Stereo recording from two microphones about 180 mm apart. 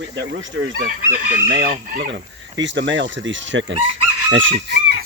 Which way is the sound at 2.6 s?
90° right.